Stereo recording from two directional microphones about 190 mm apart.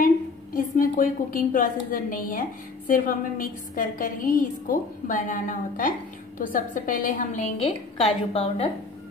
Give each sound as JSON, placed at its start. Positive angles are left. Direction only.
{"t": 0.7, "sound": "a woman's voice", "side_deg": 45}